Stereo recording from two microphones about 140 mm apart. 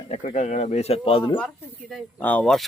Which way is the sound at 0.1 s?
55° left (ahead or behind).